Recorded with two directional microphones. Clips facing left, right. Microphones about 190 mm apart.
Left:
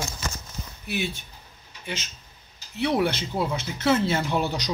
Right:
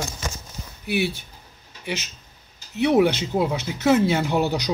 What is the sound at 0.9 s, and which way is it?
Speech, 10° right (ahead or behind).